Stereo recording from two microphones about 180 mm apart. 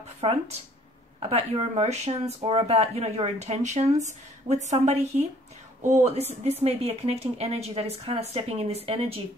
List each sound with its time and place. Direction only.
0.2 s speech: 35° right (ahead or behind)